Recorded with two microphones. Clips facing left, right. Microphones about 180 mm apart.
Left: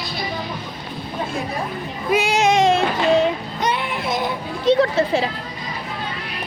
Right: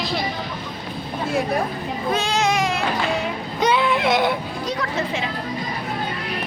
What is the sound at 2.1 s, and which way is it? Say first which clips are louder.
Child singing: left 5 dB; 15° left (ahead or behind).